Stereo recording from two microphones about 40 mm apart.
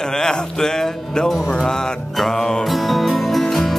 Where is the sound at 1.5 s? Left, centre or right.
Centre.